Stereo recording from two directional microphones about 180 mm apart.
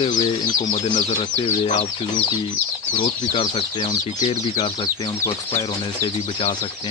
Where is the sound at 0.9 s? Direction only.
35° left (ahead or behind).